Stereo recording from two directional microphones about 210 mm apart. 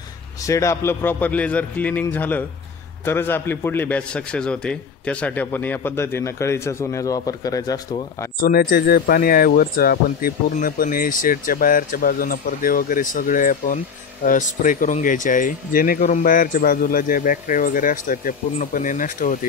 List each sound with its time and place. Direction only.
0.5 s a man's voice: 15° left (ahead or behind)
8.4 s speech: 45° left (ahead or behind)